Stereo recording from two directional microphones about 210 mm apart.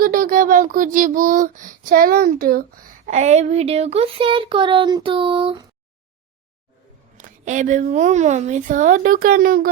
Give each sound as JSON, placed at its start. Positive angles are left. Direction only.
{"t": 0.0, "sound": "child singing", "side_deg": -40}
{"t": 3.1, "sound": "speech", "side_deg": -35}
{"t": 7.2, "sound": "child singing", "side_deg": -35}